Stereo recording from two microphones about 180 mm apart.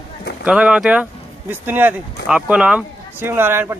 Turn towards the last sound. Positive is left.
turn(degrees=-10)  # may be behind; listen again after turning